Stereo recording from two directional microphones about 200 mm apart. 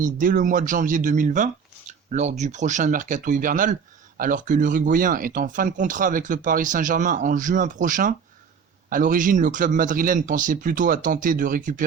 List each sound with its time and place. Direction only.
0.0 s speech: 40° right (ahead or behind)